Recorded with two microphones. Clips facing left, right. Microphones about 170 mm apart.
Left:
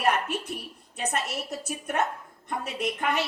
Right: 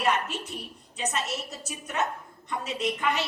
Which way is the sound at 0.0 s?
55° left (ahead or behind).